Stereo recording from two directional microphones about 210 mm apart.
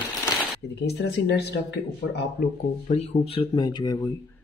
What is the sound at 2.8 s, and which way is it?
Speech, 30° left (ahead or behind).